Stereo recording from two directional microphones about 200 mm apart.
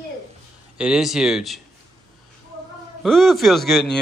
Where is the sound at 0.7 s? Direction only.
5° right (ahead or behind).